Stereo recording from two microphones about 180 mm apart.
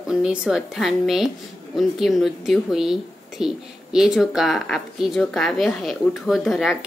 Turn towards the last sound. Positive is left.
turn(degrees=0)  # may be behind; listen again after turning